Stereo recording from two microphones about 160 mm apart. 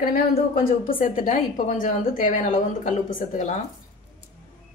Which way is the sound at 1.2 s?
55° left (ahead or behind).